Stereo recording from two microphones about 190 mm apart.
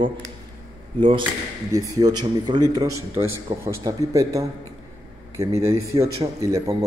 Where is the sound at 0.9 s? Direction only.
25° right (ahead or behind).